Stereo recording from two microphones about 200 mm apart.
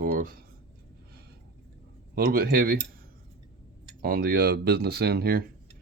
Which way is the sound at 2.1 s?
50° right (ahead or behind).